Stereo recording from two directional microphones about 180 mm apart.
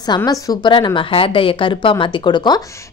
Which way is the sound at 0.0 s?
20° left (ahead or behind).